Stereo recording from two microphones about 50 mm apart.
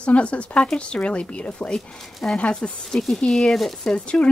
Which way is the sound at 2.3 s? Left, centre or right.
Centre.